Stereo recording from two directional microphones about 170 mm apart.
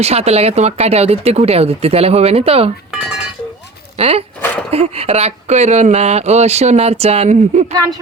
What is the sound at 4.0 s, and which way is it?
Speech, 35° right (ahead or behind).